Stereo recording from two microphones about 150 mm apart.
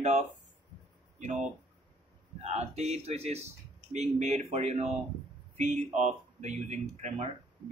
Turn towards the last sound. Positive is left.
turn(degrees=-45)  # may be behind; listen again after turning